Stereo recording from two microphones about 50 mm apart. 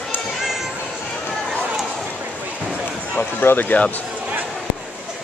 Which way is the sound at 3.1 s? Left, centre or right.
Left.